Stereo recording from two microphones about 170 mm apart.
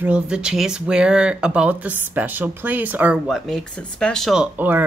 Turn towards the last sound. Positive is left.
turn(degrees=-5)  # may be behind; listen again after turning